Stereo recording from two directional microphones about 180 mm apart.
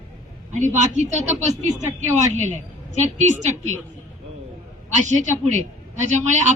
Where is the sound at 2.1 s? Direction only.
40° right (ahead or behind).